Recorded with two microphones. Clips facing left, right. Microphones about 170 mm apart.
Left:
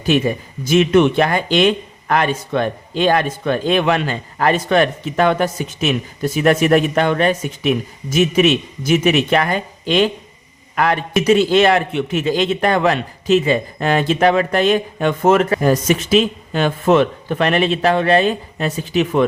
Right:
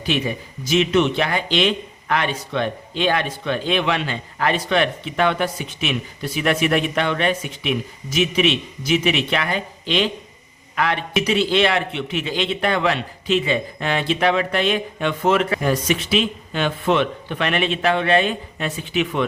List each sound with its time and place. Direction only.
0.0 s speech: 45° left (ahead or behind)